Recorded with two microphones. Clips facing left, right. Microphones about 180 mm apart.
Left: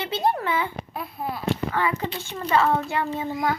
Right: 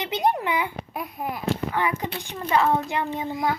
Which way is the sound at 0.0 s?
20° right (ahead or behind).